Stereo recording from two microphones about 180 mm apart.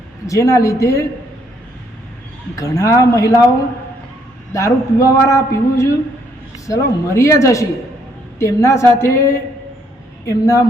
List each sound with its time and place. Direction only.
0.3 s a woman's voice: 20° left (ahead or behind)
2.6 s a woman's voice: 20° left (ahead or behind)
4.5 s a woman's voice: 15° left (ahead or behind)